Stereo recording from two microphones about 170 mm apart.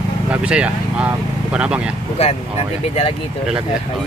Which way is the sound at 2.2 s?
35° left (ahead or behind).